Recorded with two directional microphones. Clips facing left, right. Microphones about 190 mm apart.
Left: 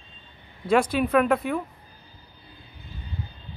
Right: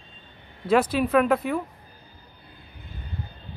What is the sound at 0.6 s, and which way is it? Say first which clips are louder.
Speech: even; 5° right (ahead or behind).